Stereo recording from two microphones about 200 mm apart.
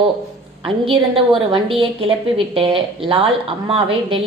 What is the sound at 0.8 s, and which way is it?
A woman's voice, 25° right (ahead or behind).